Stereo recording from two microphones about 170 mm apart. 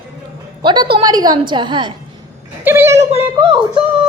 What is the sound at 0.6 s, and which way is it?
Music, 25° right (ahead or behind).